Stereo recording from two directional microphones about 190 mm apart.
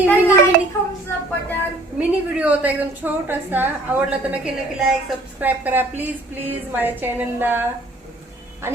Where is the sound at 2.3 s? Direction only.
10° right (ahead or behind).